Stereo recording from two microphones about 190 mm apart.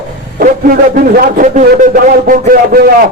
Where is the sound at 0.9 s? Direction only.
45° right (ahead or behind).